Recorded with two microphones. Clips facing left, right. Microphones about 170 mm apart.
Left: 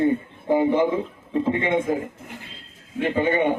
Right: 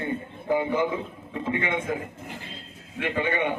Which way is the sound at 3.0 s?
35° left (ahead or behind).